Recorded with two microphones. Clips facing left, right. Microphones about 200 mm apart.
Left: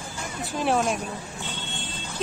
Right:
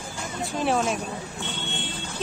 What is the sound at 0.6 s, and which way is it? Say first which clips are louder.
Speech: left 1 dB; centre (ahead or behind).